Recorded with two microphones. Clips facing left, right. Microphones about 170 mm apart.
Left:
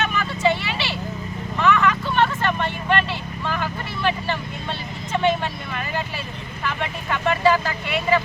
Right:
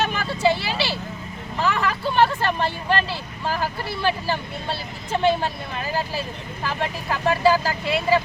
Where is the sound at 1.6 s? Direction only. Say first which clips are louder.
Left 3 dB; 30° right (ahead or behind).